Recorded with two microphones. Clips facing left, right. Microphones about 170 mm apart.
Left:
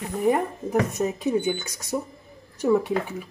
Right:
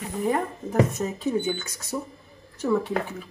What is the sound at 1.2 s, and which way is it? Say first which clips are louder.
Speech: right 1 dB; 15° left (ahead or behind).